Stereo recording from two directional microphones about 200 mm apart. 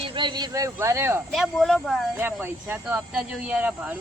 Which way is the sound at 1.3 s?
Centre (ahead or behind).